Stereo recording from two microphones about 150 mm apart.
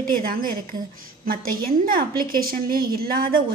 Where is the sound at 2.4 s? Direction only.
75° right (ahead or behind).